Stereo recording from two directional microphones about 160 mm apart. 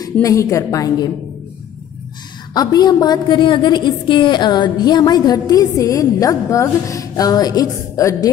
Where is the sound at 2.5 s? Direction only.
25° left (ahead or behind).